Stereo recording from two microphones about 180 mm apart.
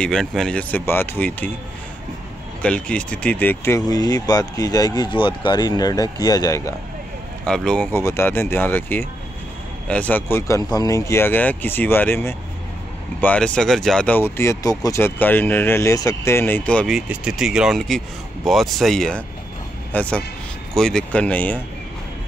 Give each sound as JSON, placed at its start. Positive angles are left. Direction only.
{"t": 0.0, "sound": "speech", "side_deg": 5}
{"t": 2.6, "sound": "speech", "side_deg": 5}
{"t": 7.4, "sound": "speech", "side_deg": 5}